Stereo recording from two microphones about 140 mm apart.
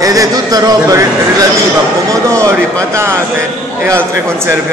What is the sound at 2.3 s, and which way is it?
Speech, 20° right (ahead or behind).